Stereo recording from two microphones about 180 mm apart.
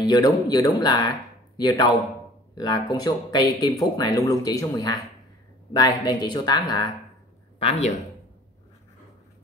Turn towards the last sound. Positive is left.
turn(degrees=35)  # may be behind; listen again after turning